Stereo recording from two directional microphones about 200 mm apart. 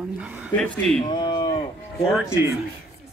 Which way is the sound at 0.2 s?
10° right (ahead or behind).